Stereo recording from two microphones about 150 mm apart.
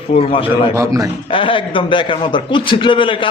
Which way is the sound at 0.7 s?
20° right (ahead or behind).